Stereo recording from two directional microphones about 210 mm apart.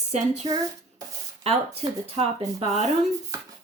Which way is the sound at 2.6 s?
30° right (ahead or behind).